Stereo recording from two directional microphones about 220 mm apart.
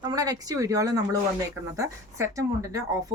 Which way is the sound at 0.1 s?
15° right (ahead or behind).